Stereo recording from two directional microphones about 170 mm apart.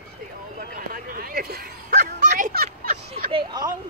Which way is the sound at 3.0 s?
30° right (ahead or behind).